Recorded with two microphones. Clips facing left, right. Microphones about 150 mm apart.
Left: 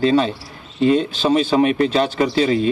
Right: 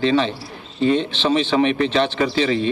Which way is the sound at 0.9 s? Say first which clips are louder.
Left 2 dB; 5° left (ahead or behind).